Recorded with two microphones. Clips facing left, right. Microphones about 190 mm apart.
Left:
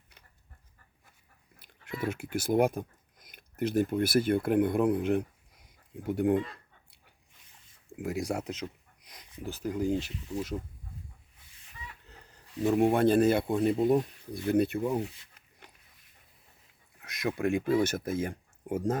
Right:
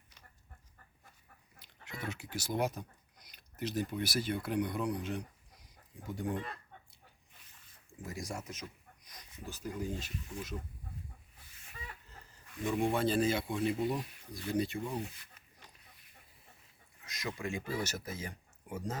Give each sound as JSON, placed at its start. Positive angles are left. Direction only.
{"t": 1.5, "sound": "speech", "side_deg": 55}
{"t": 7.9, "sound": "speech", "side_deg": 70}
{"t": 12.0, "sound": "a man's voice", "side_deg": 65}
{"t": 17.0, "sound": "speech", "side_deg": 60}